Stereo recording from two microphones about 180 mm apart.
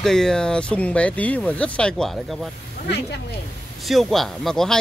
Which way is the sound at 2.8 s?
70° left (ahead or behind).